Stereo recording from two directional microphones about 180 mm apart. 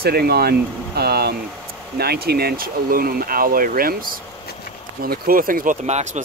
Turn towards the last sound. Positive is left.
turn(degrees=-40)  # may be behind; listen again after turning